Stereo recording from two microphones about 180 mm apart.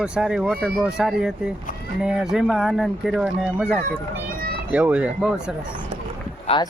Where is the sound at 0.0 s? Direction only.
5° right (ahead or behind).